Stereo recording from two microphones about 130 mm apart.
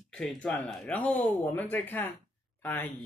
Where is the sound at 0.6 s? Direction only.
Centre (ahead or behind).